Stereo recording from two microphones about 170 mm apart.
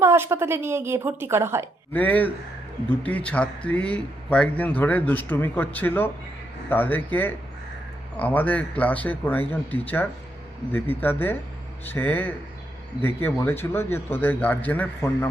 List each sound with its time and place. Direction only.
0.0 s a woman's voice: 15° right (ahead or behind)
1.9 s a man's voice: 10° left (ahead or behind)